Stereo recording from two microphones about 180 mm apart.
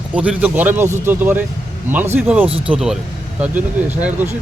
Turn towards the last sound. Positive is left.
turn(degrees=-10)  # may be behind; listen again after turning